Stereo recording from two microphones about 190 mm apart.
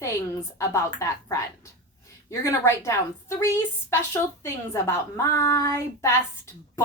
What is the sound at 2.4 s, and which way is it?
A woman's voice, 15° left (ahead or behind).